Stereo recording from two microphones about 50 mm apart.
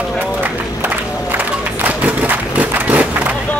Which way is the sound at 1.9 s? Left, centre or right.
Right.